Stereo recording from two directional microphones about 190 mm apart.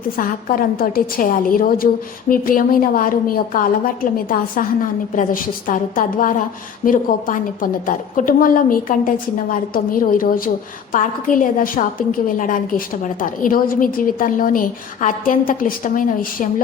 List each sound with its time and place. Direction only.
0.2 s a woman's voice: 50° left (ahead or behind)
5.1 s a woman's voice: 45° left (ahead or behind)